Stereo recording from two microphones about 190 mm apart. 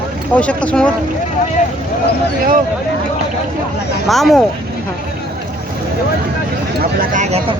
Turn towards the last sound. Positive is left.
turn(degrees=-35)  # may be behind; listen again after turning